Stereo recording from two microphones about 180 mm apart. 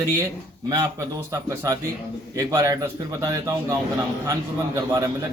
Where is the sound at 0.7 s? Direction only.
20° right (ahead or behind).